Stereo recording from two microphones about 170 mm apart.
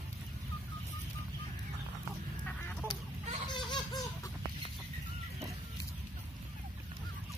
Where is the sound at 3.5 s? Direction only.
25° left (ahead or behind).